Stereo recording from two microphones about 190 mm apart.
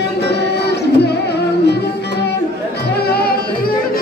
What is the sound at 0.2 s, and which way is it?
Music, 60° left (ahead or behind).